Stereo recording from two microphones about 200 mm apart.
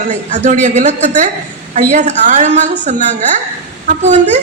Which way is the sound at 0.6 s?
35° right (ahead or behind).